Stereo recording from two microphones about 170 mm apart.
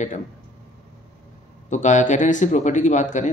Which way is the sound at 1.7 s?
45° left (ahead or behind).